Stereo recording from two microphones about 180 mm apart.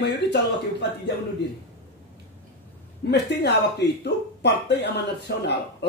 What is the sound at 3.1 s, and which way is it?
Speech, 70° left (ahead or behind).